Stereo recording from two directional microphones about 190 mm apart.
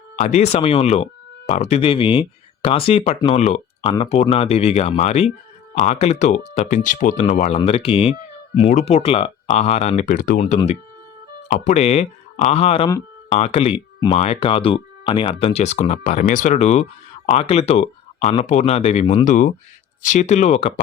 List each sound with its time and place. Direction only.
0.2 s speech: 35° left (ahead or behind)
11.4 s speech: 40° left (ahead or behind)